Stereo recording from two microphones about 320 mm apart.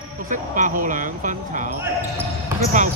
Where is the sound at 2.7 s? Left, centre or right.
Right.